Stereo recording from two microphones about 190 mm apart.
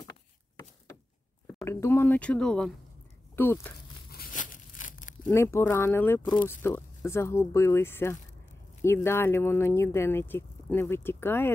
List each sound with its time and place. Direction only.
1.5 s speech: 15° left (ahead or behind)
4.1 s tearing: 45° left (ahead or behind)
5.3 s speech: 15° left (ahead or behind)